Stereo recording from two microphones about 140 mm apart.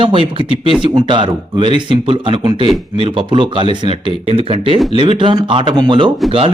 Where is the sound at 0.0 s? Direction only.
40° right (ahead or behind).